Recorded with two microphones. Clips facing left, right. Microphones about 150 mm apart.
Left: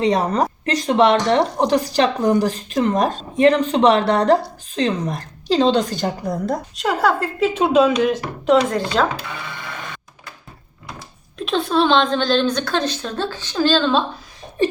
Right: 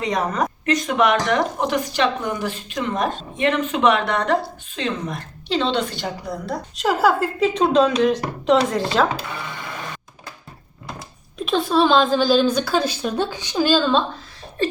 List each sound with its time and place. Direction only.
0.0 s a woman's voice: 30° left (ahead or behind)
6.7 s speech: centre (ahead or behind)
11.3 s a woman's voice: centre (ahead or behind)